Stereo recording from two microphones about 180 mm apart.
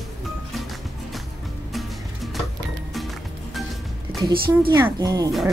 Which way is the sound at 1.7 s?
Centre (ahead or behind).